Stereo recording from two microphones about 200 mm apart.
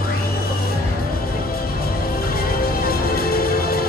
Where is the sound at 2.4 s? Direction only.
50° left (ahead or behind).